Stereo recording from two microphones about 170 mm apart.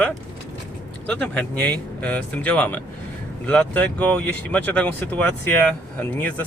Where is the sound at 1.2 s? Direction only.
10° left (ahead or behind).